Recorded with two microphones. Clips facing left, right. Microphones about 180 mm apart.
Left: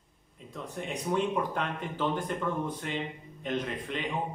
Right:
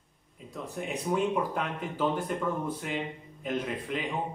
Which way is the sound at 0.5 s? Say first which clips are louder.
Right 2 dB; 5° right (ahead or behind).